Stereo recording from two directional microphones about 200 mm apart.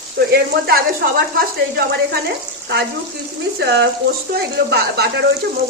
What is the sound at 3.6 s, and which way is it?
Speech, 60° right (ahead or behind).